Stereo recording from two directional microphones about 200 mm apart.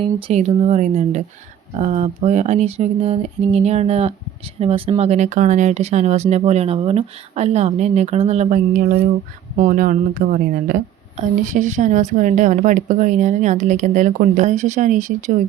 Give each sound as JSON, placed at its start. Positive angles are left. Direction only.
{"t": 0.0, "sound": "speech", "side_deg": -30}